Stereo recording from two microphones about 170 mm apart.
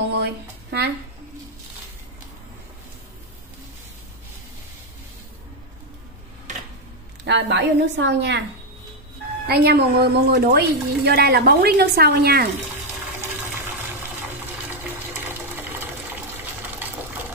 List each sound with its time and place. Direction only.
0.1 s a sound: 75° right (ahead or behind)
7.2 s a woman's voice: 90° right
9.5 s a woman's voice: 70° right (ahead or behind)